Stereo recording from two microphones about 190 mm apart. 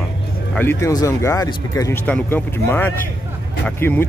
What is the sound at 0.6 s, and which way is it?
Speech, 15° left (ahead or behind).